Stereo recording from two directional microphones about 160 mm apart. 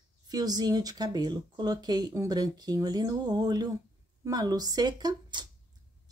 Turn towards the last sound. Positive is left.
turn(degrees=-25)  # may be behind; listen again after turning